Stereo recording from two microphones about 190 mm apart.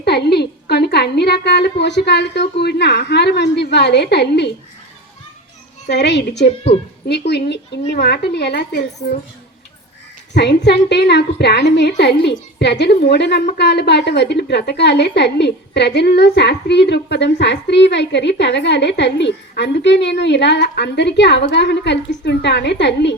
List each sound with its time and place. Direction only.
0.0 s a woman's voice: 60° left (ahead or behind)
5.9 s a woman's voice: 65° left (ahead or behind)
10.3 s a woman's voice: 60° left (ahead or behind)